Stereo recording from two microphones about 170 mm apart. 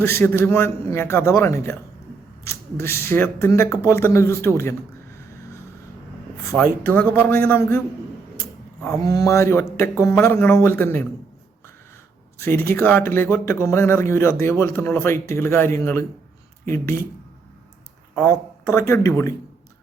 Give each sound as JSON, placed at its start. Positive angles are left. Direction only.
{"t": 0.0, "sound": "speech", "side_deg": 15}
{"t": 6.5, "sound": "speech", "side_deg": 10}
{"t": 12.4, "sound": "speech", "side_deg": 15}
{"t": 18.1, "sound": "speech", "side_deg": 10}